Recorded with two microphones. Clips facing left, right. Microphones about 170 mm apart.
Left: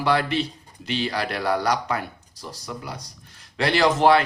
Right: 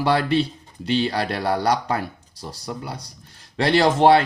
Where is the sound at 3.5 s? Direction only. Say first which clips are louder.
Right 2 dB; 30° right (ahead or behind).